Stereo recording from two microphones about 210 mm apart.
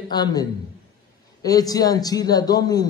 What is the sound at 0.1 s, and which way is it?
A man's voice, 20° left (ahead or behind).